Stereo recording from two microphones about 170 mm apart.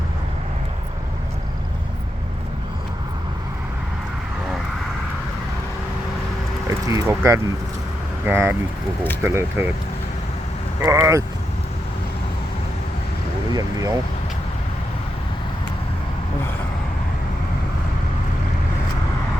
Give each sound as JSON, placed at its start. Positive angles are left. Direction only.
{"t": 6.7, "sound": "speech", "side_deg": -20}
{"t": 10.8, "sound": "speech", "side_deg": -15}
{"t": 13.5, "sound": "speech", "side_deg": -20}